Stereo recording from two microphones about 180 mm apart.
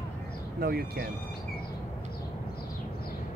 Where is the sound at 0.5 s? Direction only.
60° right (ahead or behind).